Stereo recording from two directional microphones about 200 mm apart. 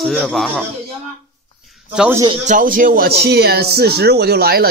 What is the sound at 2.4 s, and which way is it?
Speech, 40° right (ahead or behind).